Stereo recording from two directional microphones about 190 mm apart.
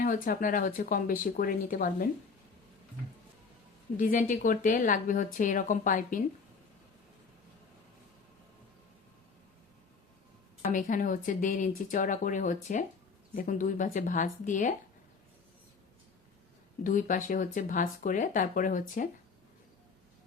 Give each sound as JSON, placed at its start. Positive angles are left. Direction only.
{"t": 0.0, "sound": "speech", "side_deg": 45}
{"t": 3.9, "sound": "speech", "side_deg": 45}
{"t": 10.6, "sound": "speech", "side_deg": 45}
{"t": 16.8, "sound": "speech", "side_deg": 45}